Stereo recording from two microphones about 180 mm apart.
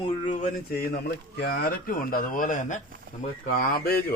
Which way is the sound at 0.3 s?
50° left (ahead or behind).